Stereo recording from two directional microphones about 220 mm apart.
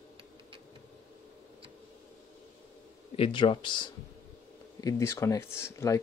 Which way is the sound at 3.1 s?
25° left (ahead or behind).